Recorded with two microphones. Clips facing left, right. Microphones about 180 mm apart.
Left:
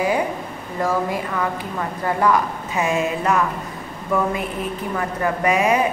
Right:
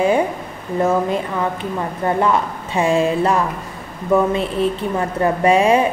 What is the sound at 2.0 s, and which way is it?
A woman's voice, 25° right (ahead or behind).